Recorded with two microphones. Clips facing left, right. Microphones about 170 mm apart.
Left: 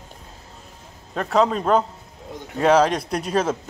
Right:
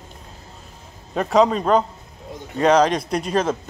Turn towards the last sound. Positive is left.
turn(degrees=5)  # may be behind; listen again after turning